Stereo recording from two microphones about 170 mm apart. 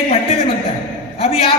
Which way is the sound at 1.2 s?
35° left (ahead or behind).